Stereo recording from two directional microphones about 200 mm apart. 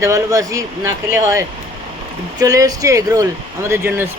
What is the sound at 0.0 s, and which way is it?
Speech, 15° right (ahead or behind).